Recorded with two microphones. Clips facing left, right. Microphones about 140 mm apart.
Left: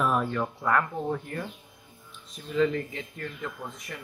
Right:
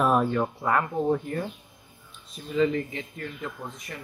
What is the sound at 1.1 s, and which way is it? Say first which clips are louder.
Speech: right 5 dB; 25° right (ahead or behind).